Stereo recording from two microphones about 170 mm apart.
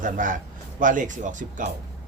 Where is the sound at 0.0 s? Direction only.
50° right (ahead or behind).